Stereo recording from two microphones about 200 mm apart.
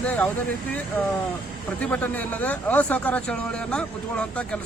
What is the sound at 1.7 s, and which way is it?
Speech, 5° left (ahead or behind).